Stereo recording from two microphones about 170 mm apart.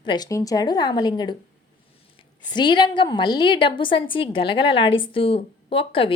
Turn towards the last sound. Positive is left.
turn(degrees=30)  # may be behind; listen again after turning